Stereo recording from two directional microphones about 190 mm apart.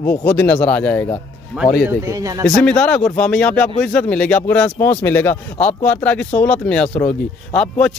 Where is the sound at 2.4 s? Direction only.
5° left (ahead or behind).